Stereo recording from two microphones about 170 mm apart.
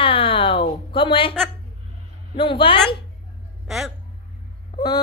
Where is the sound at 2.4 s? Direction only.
30° left (ahead or behind).